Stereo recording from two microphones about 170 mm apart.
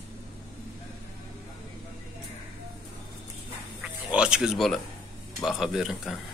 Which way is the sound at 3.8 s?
5° right (ahead or behind).